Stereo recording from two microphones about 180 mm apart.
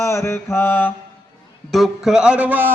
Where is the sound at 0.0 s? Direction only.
15° left (ahead or behind).